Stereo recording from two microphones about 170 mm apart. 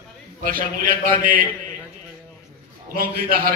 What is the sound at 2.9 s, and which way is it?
Speech, 60° right (ahead or behind).